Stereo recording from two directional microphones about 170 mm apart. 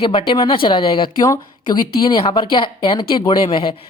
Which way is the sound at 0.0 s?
30° left (ahead or behind).